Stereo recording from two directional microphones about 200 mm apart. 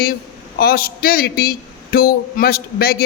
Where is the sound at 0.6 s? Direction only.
50° left (ahead or behind).